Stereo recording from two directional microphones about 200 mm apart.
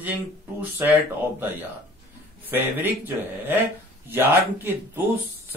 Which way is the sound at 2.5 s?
10° right (ahead or behind).